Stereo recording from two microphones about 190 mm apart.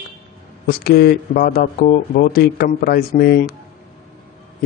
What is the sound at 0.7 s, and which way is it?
A man's voice, 55° left (ahead or behind).